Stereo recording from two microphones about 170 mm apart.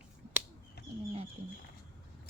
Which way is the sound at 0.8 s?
70° left (ahead or behind).